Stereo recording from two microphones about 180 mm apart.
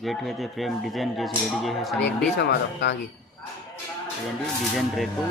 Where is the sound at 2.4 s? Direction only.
70° left (ahead or behind).